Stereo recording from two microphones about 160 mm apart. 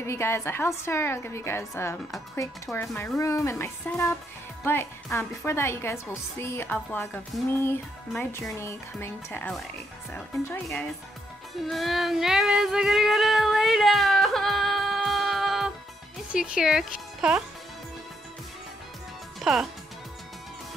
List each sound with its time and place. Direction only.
0.0 s a woman's voice: 15° left (ahead or behind)
11.6 s child singing: centre (ahead or behind)
16.3 s speech: 5° right (ahead or behind)
19.4 s speech: centre (ahead or behind)